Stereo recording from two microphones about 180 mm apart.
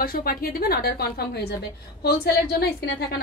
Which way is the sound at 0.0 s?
55° left (ahead or behind).